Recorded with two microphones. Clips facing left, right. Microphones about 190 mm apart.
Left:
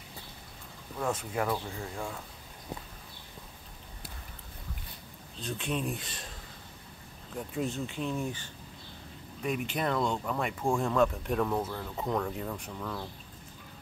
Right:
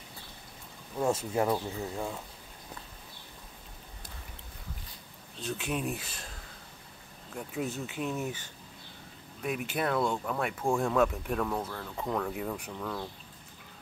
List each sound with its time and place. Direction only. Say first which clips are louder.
0.9 s speech: right 3 dB; 25° right (ahead or behind)
2.0 s speech: right 2 dB; 5° right (ahead or behind)
5.4 s speech: even; 5° right (ahead or behind)
7.3 s speech: left 1 dB; 5° right (ahead or behind)
9.4 s speech: even; 5° right (ahead or behind)